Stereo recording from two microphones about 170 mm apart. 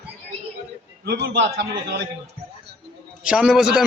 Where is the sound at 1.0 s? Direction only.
75° right (ahead or behind).